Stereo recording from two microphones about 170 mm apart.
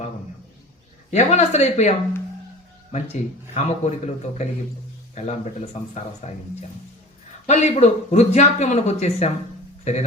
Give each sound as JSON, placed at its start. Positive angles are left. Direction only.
{"t": 1.1, "sound": "speech", "side_deg": 40}
{"t": 2.9, "sound": "speech", "side_deg": 40}